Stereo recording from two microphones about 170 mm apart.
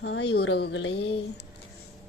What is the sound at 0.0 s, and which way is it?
Speech, 90° left.